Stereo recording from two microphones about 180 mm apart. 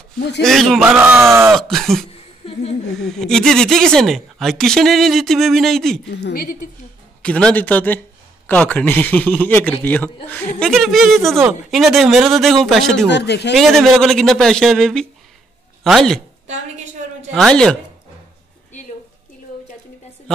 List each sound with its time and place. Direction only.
0.4 s speech: centre (ahead or behind)
0.8 s speech: 10° right (ahead or behind)
1.6 s speech: centre (ahead or behind)
2.0 s a sound: 30° left (ahead or behind)
3.0 s speech: centre (ahead or behind)
6.0 s a man's voice: 70° left (ahead or behind)
7.2 s a man's voice: 5° left (ahead or behind)
13.1 s a man's voice: 70° left (ahead or behind)
13.6 s speech: centre (ahead or behind)
17.3 s speech: centre (ahead or behind)